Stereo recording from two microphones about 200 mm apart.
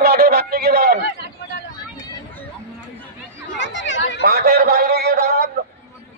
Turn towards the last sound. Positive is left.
turn(degrees=-50)  # may be behind; listen again after turning